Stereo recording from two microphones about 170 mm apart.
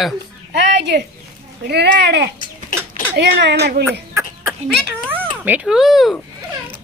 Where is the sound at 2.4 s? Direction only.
50° left (ahead or behind).